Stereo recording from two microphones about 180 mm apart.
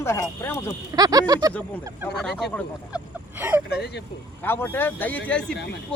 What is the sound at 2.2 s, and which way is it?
Speech, centre (ahead or behind).